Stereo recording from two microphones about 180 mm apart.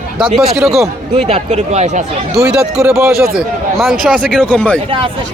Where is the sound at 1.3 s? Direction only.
35° right (ahead or behind).